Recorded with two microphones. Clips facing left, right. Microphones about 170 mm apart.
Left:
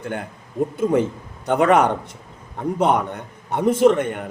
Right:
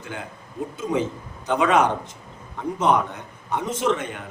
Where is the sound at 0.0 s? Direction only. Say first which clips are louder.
Left 6 dB; 55° left (ahead or behind).